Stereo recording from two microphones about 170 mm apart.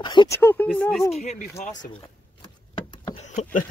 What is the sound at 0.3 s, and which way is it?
Speech, 10° left (ahead or behind).